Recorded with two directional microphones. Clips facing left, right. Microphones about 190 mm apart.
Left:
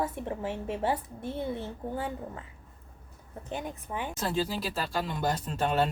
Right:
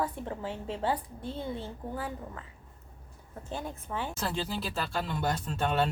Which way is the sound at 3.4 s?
15° left (ahead or behind).